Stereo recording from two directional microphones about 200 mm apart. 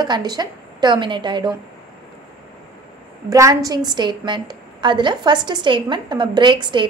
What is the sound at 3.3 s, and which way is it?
A woman's voice, 15° right (ahead or behind).